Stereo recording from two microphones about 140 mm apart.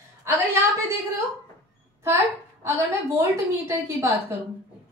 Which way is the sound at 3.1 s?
20° right (ahead or behind).